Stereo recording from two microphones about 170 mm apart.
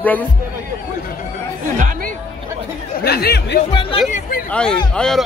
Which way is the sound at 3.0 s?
70° left (ahead or behind).